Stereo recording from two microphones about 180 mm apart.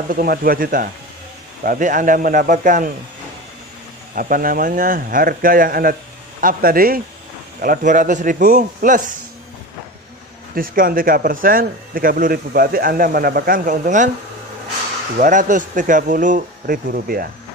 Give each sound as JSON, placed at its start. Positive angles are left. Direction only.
{"t": 0.1, "sound": "speech", "side_deg": -55}
{"t": 4.1, "sound": "speech", "side_deg": -50}
{"t": 10.5, "sound": "speech", "side_deg": -50}
{"t": 15.1, "sound": "speech", "side_deg": -45}